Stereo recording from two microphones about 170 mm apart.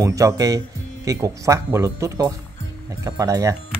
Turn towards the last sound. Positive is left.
turn(degrees=-20)  # may be behind; listen again after turning